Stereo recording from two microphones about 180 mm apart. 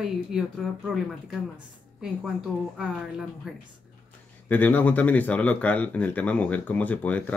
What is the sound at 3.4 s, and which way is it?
Speech, 5° right (ahead or behind).